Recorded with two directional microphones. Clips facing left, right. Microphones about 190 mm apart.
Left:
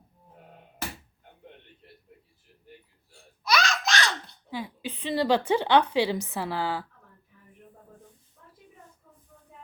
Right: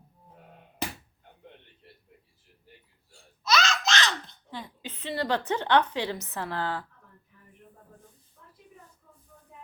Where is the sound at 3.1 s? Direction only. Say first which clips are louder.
Even; 15° left (ahead or behind).